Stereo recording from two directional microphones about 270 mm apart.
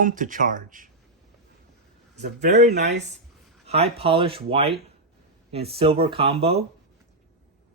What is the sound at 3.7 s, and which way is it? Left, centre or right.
Speech, right.